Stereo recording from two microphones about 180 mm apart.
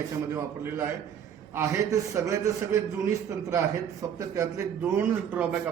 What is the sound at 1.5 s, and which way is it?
Speech, 15° right (ahead or behind).